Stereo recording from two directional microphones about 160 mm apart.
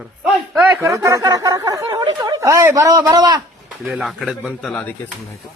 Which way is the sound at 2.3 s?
20° right (ahead or behind).